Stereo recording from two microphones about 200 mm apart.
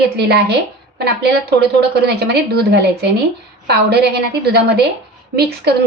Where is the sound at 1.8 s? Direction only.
55° right (ahead or behind).